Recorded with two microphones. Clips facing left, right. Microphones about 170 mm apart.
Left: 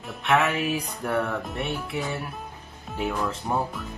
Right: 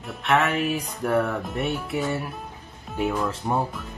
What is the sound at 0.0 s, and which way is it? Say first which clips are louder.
Music: even; centre (ahead or behind).